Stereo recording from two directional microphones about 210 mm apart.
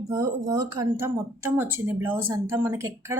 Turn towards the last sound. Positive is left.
turn(degrees=-15)  # may be behind; listen again after turning